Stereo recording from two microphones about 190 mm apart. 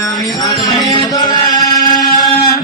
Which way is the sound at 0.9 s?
20° left (ahead or behind).